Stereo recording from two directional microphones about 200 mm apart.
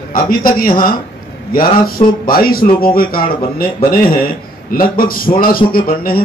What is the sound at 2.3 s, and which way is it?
Speech, 45° left (ahead or behind).